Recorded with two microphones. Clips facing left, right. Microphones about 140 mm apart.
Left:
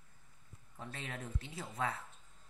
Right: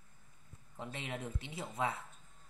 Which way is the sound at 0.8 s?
20° right (ahead or behind).